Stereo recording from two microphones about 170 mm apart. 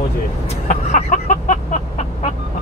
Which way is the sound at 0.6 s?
45° left (ahead or behind).